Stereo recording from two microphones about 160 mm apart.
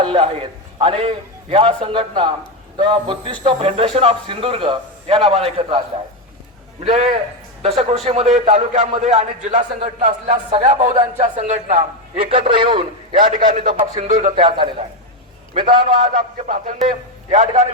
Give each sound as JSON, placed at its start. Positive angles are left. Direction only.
{"t": 0.0, "sound": "a man's voice", "side_deg": -35}
{"t": 6.8, "sound": "a man's voice", "side_deg": -45}
{"t": 12.5, "sound": "a man's voice", "side_deg": -30}
{"t": 13.1, "sound": "a man's voice", "side_deg": -60}
{"t": 14.3, "sound": "a man's voice", "side_deg": -30}
{"t": 16.0, "sound": "a man's voice", "side_deg": -60}